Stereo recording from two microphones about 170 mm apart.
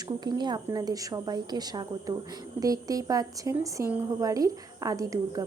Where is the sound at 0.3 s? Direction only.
25° right (ahead or behind).